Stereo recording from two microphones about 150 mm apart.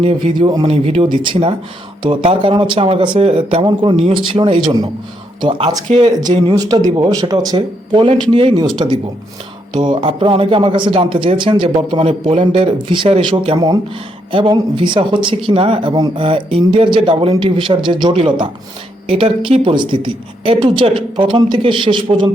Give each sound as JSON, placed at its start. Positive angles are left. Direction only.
{"t": 0.0, "sound": "a man's voice", "side_deg": -35}